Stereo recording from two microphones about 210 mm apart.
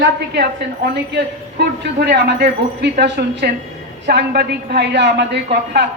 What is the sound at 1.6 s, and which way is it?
A woman's voice, 50° right (ahead or behind).